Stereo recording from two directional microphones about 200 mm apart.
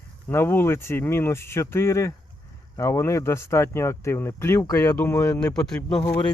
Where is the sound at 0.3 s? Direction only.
10° left (ahead or behind).